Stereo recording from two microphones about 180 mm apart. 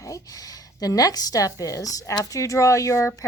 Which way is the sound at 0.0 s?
20° left (ahead or behind).